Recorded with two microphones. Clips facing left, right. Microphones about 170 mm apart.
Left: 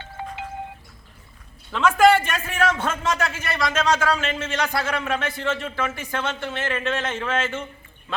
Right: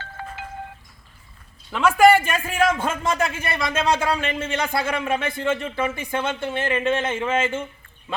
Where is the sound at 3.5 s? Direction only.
25° right (ahead or behind).